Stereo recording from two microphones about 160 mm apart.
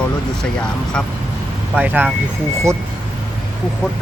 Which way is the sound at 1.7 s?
10° right (ahead or behind).